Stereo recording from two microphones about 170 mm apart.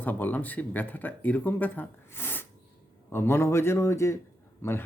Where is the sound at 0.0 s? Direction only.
10° left (ahead or behind).